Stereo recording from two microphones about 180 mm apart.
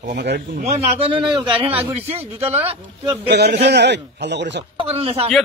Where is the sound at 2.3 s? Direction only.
15° right (ahead or behind).